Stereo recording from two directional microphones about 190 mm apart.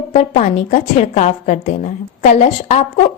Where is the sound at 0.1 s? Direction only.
35° left (ahead or behind).